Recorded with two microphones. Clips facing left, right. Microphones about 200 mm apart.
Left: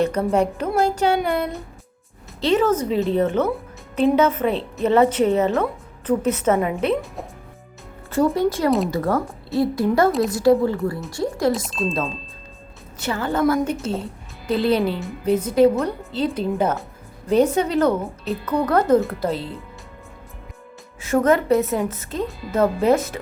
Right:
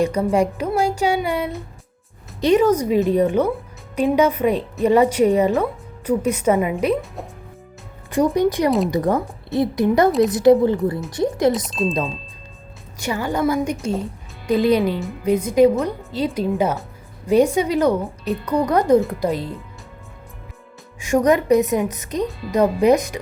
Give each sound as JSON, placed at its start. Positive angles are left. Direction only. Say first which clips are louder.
{"t": 0.0, "sound": "a woman's voice", "louder": "right 1 dB", "side_deg": -10}
{"t": 8.1, "sound": "a woman's voice", "louder": "right 2 dB", "side_deg": -15}
{"t": 11.5, "sound": "speech", "louder": "right 2 dB", "side_deg": 0}
{"t": 13.0, "sound": "a woman's voice", "louder": "even", "side_deg": -15}
{"t": 21.0, "sound": "a woman's voice", "louder": "right 1 dB", "side_deg": -15}
{"t": 22.2, "sound": "speech", "louder": "right 2 dB", "side_deg": 0}
{"t": 22.5, "sound": "a woman's voice", "louder": "right 2 dB", "side_deg": -15}